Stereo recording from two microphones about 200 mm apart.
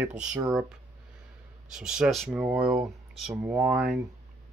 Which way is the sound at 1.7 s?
5° right (ahead or behind).